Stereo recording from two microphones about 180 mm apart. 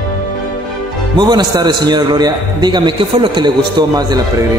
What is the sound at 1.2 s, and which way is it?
A man's voice, 25° right (ahead or behind).